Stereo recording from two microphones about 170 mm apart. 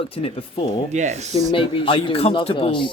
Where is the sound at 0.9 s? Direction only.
40° right (ahead or behind).